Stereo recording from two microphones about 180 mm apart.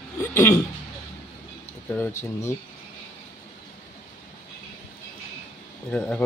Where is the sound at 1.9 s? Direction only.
10° left (ahead or behind).